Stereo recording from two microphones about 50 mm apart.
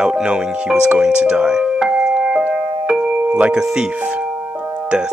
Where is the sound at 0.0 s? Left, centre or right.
Centre.